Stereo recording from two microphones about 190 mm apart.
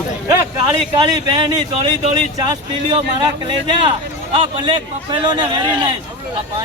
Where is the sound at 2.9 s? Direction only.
25° right (ahead or behind).